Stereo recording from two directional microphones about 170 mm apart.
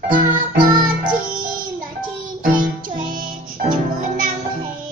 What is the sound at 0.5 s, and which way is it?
Music, 55° right (ahead or behind).